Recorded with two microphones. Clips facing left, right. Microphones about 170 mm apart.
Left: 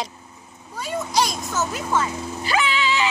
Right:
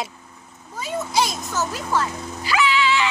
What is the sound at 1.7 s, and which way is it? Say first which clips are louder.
Speech: left 1 dB; 5° left (ahead or behind).